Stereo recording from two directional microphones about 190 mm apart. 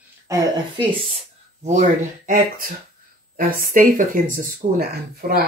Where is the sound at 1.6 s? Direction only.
40° right (ahead or behind).